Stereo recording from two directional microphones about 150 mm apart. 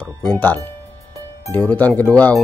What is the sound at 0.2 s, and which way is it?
Speech, 10° left (ahead or behind).